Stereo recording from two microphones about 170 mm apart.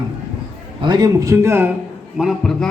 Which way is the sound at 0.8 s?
25° right (ahead or behind).